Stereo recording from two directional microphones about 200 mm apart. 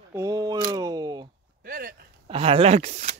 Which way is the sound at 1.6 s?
45° right (ahead or behind).